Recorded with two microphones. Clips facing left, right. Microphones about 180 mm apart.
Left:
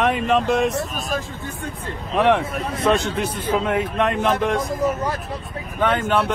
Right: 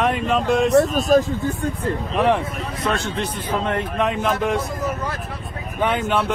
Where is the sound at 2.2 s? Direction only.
Centre (ahead or behind).